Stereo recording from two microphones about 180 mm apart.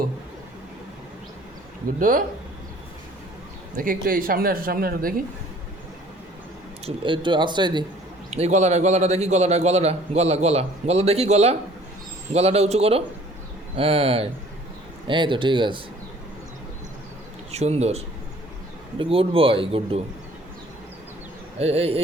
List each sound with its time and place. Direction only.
2.0 s speech: 50° right (ahead or behind)
3.8 s speech: 50° right (ahead or behind)
6.8 s speech: 25° right (ahead or behind)
8.3 s a man's voice: 40° right (ahead or behind)
17.5 s a man's voice: 35° right (ahead or behind)
21.6 s a man's voice: 35° right (ahead or behind)